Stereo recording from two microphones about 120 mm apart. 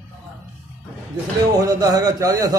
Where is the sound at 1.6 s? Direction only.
30° right (ahead or behind).